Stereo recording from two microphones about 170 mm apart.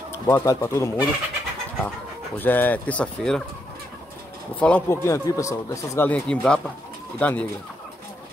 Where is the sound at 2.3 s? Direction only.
10° left (ahead or behind).